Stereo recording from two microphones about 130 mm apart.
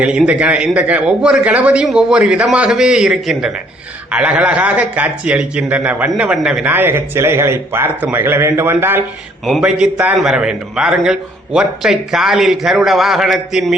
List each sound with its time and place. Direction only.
0.0 s a man's voice: 10° right (ahead or behind)
9.5 s a man's voice: 5° right (ahead or behind)